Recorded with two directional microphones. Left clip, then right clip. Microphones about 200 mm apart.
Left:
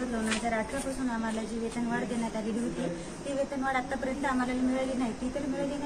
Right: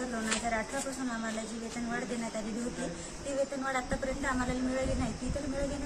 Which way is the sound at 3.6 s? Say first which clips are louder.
Left 3 dB; centre (ahead or behind).